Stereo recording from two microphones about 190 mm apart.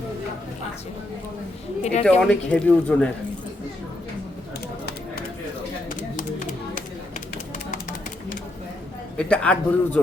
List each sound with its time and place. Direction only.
1.8 s a woman's voice: 35° left (ahead or behind)
2.0 s speech: 5° left (ahead or behind)
5.9 s a sound: 40° left (ahead or behind)
9.1 s speech: 5° left (ahead or behind)